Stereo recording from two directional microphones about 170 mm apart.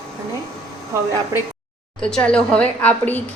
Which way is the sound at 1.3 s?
20° right (ahead or behind).